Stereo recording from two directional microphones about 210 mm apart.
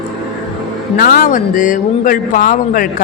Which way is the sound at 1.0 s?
40° left (ahead or behind).